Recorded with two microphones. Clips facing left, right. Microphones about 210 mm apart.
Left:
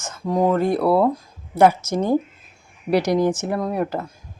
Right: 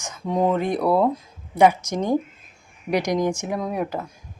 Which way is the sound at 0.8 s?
5° left (ahead or behind).